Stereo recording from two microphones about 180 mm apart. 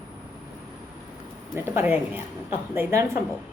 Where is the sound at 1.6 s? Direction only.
15° right (ahead or behind).